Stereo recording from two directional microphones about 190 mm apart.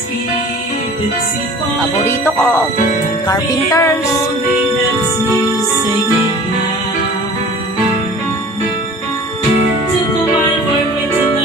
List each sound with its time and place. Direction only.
3.3 s music: 15° left (ahead or behind)